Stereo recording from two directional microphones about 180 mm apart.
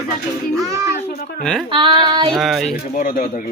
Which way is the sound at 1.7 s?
25° right (ahead or behind).